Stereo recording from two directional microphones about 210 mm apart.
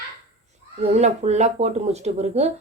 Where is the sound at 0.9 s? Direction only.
30° right (ahead or behind).